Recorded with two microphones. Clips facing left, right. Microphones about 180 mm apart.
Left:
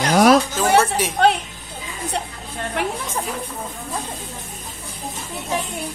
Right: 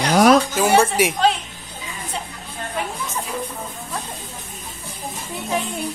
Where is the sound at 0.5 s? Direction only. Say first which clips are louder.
Right 1 dB; 10° right (ahead or behind).